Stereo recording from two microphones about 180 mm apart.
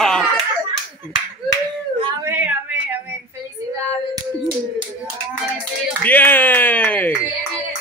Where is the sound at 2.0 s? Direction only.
25° right (ahead or behind).